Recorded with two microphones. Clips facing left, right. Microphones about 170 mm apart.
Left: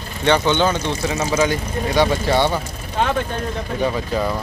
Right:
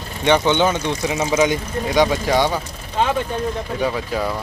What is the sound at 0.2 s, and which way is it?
Speech, 15° right (ahead or behind).